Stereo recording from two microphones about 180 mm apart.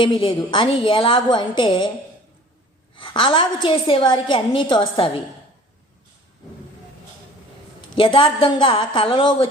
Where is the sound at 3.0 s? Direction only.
30° left (ahead or behind).